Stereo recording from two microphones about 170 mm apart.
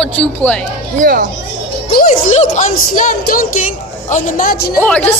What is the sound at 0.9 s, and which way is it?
Speech, 55° right (ahead or behind).